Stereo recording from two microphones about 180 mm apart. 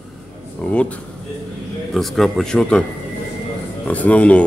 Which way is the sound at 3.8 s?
10° left (ahead or behind).